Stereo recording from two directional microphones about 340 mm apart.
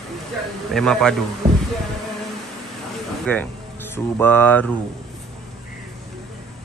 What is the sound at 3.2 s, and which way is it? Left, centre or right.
Speech, centre.